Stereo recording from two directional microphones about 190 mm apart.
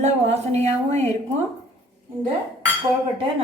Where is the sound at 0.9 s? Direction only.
35° right (ahead or behind).